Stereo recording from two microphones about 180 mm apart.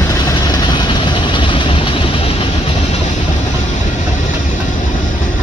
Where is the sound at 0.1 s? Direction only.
20° left (ahead or behind).